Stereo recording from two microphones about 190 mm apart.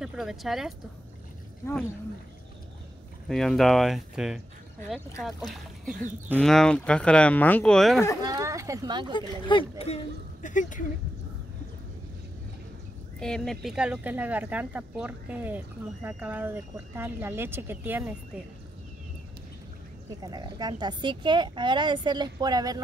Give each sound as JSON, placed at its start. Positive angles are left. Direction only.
{"t": 0.0, "sound": "speech", "side_deg": -5}
{"t": 3.3, "sound": "speech", "side_deg": 0}
{"t": 8.2, "sound": "a woman's voice", "side_deg": -15}
{"t": 9.1, "sound": "speech", "side_deg": 25}
{"t": 10.4, "sound": "speech", "side_deg": 40}
{"t": 13.2, "sound": "speech", "side_deg": 5}
{"t": 20.2, "sound": "a woman's voice", "side_deg": -20}